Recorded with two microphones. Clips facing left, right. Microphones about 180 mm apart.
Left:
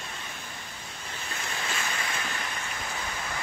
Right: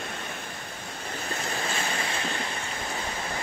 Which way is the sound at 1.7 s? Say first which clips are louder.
Right 3 dB; 30° right (ahead or behind).